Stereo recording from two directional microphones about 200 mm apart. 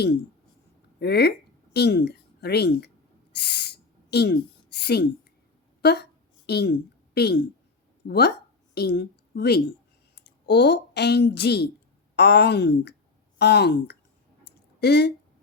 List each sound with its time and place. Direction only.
0.9 s speech: 55° left (ahead or behind)
3.3 s a sound: 55° left (ahead or behind)
8.0 s a woman's voice: 55° left (ahead or behind)